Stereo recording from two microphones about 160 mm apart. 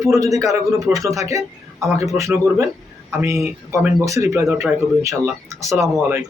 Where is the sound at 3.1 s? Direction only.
15° right (ahead or behind).